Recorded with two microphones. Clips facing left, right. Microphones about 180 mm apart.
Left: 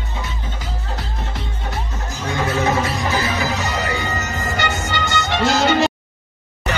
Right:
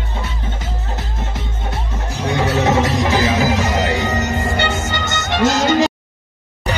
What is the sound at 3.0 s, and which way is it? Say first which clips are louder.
Music: right 5 dB; 90° right.